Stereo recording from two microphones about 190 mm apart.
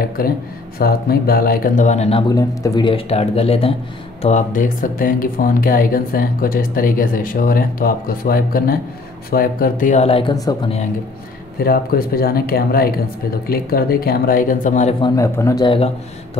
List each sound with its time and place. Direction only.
0.2 s speech: 50° left (ahead or behind); by 2.2 s 35° left (ahead or behind)
2.2 s speech: 20° left (ahead or behind)
11.6 s speech: 50° left (ahead or behind)
15.0 s speech: 25° left (ahead or behind)